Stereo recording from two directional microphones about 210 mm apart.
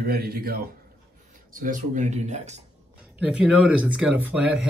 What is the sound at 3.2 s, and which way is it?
Speech, 5° right (ahead or behind).